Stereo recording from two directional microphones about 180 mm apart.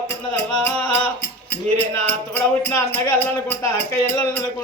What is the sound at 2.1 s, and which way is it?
Music, 15° left (ahead or behind).